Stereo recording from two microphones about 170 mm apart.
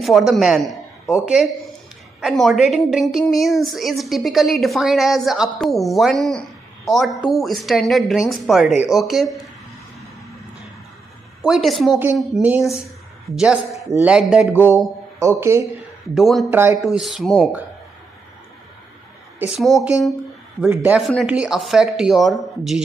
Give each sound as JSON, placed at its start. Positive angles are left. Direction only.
{"t": 0.0, "sound": "a woman's voice", "side_deg": 0}
{"t": 11.4, "sound": "a woman's voice", "side_deg": 0}
{"t": 16.2, "sound": "a woman's voice", "side_deg": 0}
{"t": 16.4, "sound": "speech", "side_deg": -15}
{"t": 16.8, "sound": "a woman's voice", "side_deg": 0}
{"t": 19.6, "sound": "a woman's voice", "side_deg": -5}